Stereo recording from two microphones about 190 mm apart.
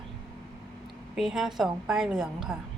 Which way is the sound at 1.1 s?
5° right (ahead or behind).